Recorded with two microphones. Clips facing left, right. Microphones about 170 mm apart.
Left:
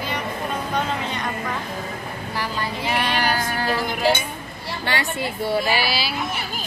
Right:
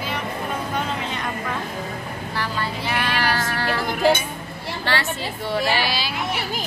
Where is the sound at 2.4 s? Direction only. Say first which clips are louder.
Even; 15° left (ahead or behind).